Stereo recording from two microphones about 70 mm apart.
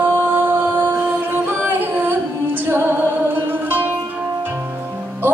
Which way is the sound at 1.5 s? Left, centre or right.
Right.